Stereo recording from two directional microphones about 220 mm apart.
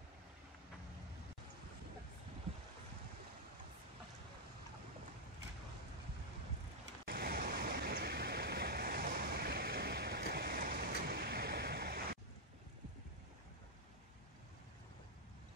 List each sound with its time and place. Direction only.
7.1 s waves: 40° right (ahead or behind)